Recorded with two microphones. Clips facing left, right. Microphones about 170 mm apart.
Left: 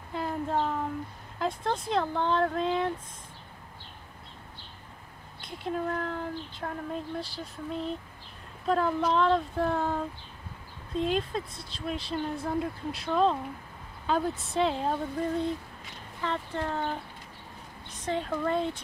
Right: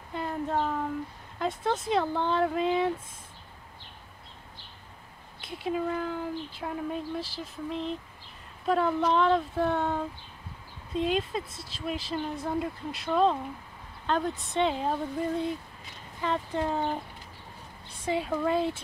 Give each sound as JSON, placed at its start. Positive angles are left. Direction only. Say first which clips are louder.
{"t": 0.1, "sound": "a sound", "louder": "even", "side_deg": 0}
{"t": 1.4, "sound": "speech", "louder": "right 1 dB", "side_deg": 0}
{"t": 5.4, "sound": "speech", "louder": "right 2 dB", "side_deg": 0}
{"t": 16.2, "sound": "speech", "louder": "right 3 dB", "side_deg": -15}
{"t": 18.0, "sound": "speech", "louder": "right 2 dB", "side_deg": -10}